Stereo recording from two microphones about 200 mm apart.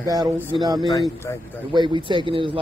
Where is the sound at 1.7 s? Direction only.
25° right (ahead or behind).